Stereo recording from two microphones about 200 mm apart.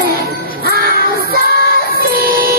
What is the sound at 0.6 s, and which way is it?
Music, 50° right (ahead or behind).